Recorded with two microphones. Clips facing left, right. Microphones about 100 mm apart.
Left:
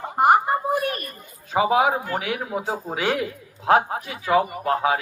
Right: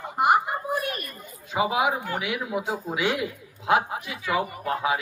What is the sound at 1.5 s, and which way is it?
A man's voice, 40° left (ahead or behind).